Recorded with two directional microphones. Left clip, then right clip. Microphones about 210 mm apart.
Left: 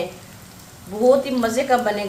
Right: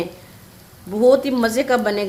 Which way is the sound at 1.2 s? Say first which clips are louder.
Right 2 dB; 50° right (ahead or behind).